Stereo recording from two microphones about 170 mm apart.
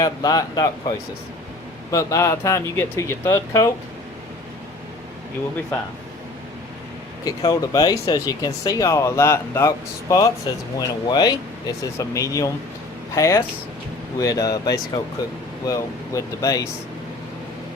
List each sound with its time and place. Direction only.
0.0 s speech: 25° left (ahead or behind)
7.3 s speech: 20° left (ahead or behind)